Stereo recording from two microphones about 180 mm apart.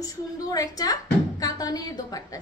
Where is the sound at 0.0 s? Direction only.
20° left (ahead or behind).